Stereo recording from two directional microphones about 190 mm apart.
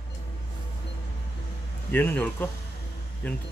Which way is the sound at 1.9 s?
10° left (ahead or behind).